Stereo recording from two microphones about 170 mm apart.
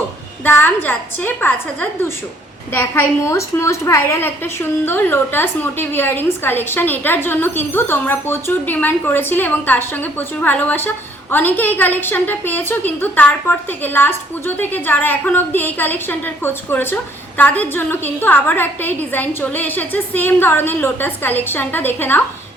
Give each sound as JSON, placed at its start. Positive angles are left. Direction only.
{"t": 0.4, "sound": "a woman's voice", "side_deg": 10}